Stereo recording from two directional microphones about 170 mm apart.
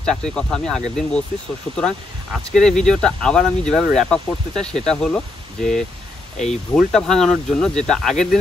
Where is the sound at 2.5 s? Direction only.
5° left (ahead or behind).